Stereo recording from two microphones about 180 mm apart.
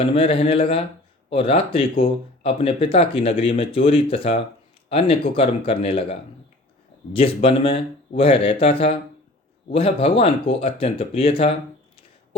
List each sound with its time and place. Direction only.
0.0 s speech: 30° left (ahead or behind)